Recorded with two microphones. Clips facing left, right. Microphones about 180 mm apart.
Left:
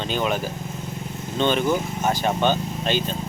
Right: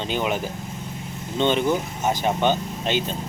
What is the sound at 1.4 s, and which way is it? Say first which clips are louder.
Speech: even; 20° right (ahead or behind).